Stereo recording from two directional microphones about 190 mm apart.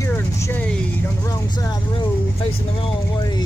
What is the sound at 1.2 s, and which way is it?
Vehicle, 20° left (ahead or behind).